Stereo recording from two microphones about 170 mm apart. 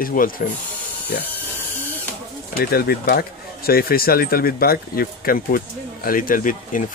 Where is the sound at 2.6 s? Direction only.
65° left (ahead or behind).